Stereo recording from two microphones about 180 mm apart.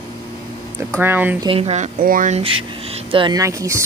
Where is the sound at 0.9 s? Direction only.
10° right (ahead or behind).